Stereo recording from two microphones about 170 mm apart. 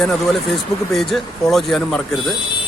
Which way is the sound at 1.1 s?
Centre (ahead or behind).